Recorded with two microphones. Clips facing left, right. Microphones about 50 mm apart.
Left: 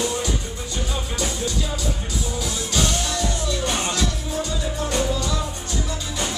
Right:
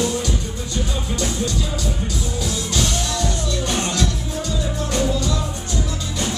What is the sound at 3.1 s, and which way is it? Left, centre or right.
Music, centre.